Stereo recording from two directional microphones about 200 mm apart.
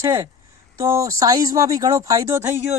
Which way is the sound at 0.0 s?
15° right (ahead or behind).